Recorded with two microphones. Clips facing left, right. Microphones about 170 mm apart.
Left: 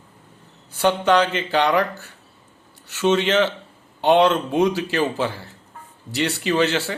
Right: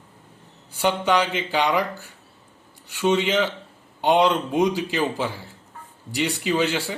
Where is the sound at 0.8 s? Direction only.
15° right (ahead or behind).